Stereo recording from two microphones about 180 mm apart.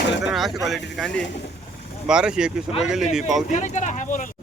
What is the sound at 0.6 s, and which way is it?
Speech, centre (ahead or behind).